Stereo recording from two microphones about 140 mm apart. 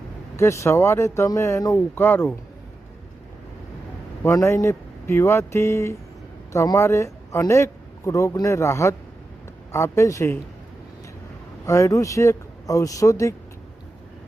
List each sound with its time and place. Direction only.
0.3 s speech: 20° left (ahead or behind)
4.2 s a man's voice: 20° left (ahead or behind)
11.6 s speech: 20° left (ahead or behind)